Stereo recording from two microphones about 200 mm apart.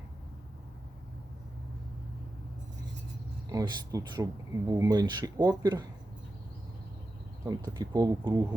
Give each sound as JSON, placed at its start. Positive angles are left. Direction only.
{"t": 3.5, "sound": "speech", "side_deg": -20}
{"t": 7.4, "sound": "speech", "side_deg": -20}